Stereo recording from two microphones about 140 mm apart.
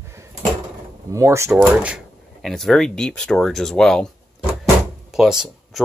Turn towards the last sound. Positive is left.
turn(degrees=-5)  # may be behind; listen again after turning